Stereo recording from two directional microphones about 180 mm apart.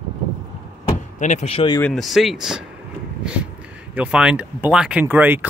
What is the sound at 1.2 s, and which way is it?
Speech, 40° left (ahead or behind).